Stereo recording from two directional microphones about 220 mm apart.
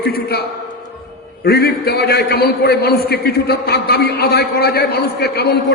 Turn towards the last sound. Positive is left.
turn(degrees=45)  # may be behind; listen again after turning